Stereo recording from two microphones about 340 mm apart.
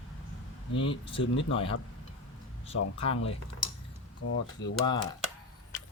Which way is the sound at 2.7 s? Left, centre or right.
Left.